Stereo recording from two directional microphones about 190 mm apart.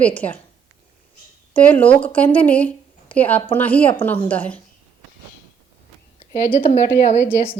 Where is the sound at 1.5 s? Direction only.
5° left (ahead or behind).